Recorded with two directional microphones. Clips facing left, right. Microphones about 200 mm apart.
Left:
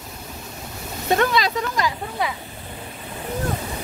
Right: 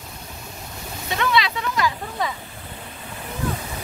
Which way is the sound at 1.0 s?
45° left (ahead or behind).